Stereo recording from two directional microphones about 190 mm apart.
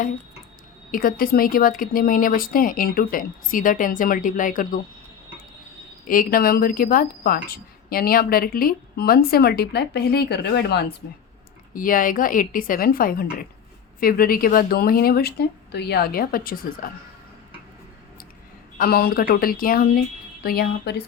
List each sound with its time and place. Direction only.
0.9 s speech: 50° left (ahead or behind)
6.1 s speech: 45° left (ahead or behind)
11.7 s speech: 45° left (ahead or behind)
18.8 s speech: 55° left (ahead or behind)